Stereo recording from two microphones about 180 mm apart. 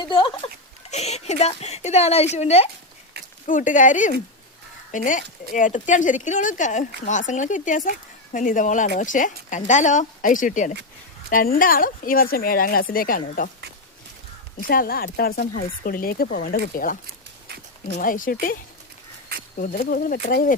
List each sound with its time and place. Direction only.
0.0 s speech: 25° left (ahead or behind)
0.9 s speech: 35° left (ahead or behind)
14.6 s speech: 55° left (ahead or behind)
18.0 s speech: 50° left (ahead or behind)
19.5 s speech: 50° left (ahead or behind)